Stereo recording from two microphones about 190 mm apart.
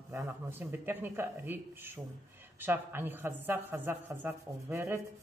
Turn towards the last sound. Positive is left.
turn(degrees=-15)  # may be behind; listen again after turning